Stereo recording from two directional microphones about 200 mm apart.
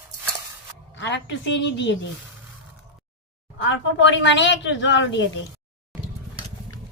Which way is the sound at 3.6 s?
65° left (ahead or behind).